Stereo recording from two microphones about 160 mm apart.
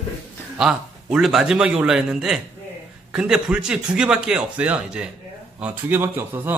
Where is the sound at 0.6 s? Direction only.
5° right (ahead or behind).